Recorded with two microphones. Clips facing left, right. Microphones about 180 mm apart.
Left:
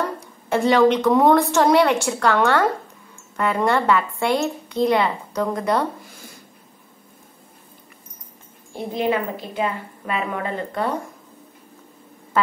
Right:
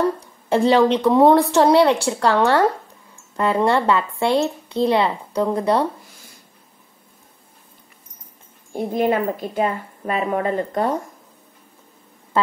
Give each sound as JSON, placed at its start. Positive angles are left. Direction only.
{"t": 0.5, "sound": "a woman's voice", "side_deg": -30}
{"t": 8.7, "sound": "a woman's voice", "side_deg": -45}